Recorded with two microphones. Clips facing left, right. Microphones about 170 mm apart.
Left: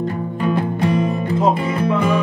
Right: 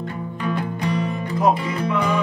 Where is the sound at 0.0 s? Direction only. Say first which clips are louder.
Left 6 dB; 45° left (ahead or behind).